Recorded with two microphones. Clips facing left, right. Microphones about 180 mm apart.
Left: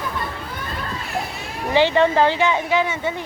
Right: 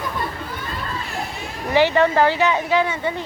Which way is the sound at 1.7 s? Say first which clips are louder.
Even; 20° left (ahead or behind).